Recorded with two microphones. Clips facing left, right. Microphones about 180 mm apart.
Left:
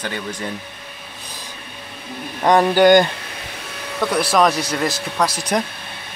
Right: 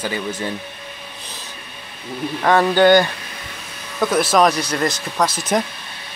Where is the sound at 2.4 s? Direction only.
15° left (ahead or behind).